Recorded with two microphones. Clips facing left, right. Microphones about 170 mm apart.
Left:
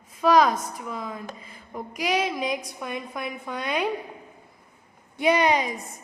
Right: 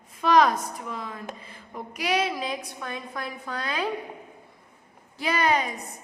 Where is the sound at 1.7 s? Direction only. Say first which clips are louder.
Left 1 dB; 15° left (ahead or behind).